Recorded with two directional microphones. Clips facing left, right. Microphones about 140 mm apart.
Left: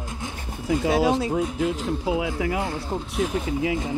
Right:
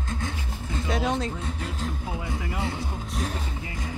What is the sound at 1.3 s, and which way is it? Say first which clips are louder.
Speech: left 10 dB; 90° left.